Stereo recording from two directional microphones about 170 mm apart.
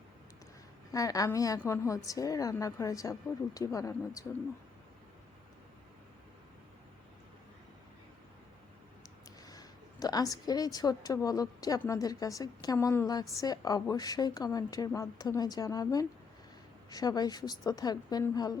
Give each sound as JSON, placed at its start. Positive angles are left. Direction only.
{"t": 0.9, "sound": "a woman's voice", "side_deg": 20}
{"t": 9.5, "sound": "a woman's voice", "side_deg": 20}